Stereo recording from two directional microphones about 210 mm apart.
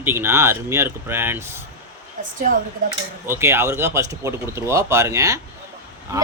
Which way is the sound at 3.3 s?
10° right (ahead or behind).